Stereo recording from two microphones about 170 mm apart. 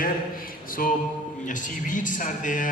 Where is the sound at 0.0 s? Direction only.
55° left (ahead or behind).